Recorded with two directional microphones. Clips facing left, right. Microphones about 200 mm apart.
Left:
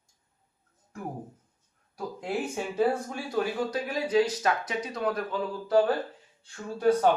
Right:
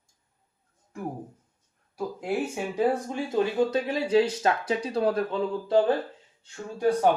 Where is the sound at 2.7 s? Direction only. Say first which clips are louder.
Right 2 dB; 15° right (ahead or behind).